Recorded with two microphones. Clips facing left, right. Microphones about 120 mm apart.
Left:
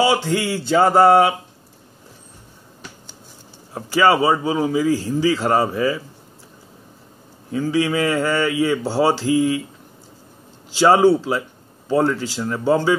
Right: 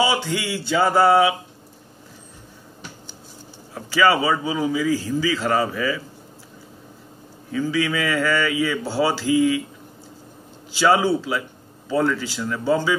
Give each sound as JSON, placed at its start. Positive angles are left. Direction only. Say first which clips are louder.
{"t": 0.0, "sound": "mantra", "louder": "left 4 dB", "side_deg": 40}
{"t": 3.7, "sound": "speech", "louder": "left 2 dB", "side_deg": 30}
{"t": 7.5, "sound": "speech", "louder": "left 3 dB", "side_deg": 30}
{"t": 10.8, "sound": "speech", "louder": "left 5 dB", "side_deg": 30}